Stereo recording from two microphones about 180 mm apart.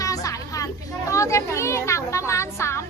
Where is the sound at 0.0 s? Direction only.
20° left (ahead or behind).